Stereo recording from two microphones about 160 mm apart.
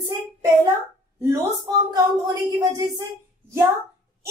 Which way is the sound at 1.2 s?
15° right (ahead or behind).